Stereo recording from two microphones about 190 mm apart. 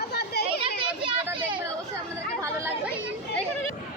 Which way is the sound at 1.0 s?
25° right (ahead or behind).